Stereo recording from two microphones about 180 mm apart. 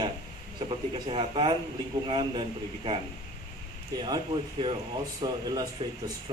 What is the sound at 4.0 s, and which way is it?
Speech, 25° right (ahead or behind).